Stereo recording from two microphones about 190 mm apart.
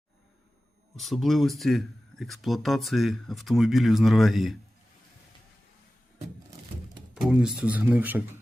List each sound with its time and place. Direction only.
0.9 s speech: centre (ahead or behind)
7.1 s speech: 5° right (ahead or behind)